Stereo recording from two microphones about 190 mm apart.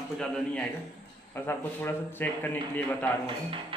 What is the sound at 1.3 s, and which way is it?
A man's voice, 10° left (ahead or behind).